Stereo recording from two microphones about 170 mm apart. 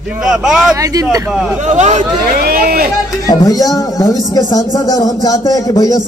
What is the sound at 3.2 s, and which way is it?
Speech, 20° left (ahead or behind).